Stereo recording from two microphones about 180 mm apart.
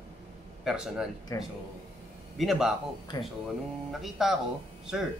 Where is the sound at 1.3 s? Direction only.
20° left (ahead or behind).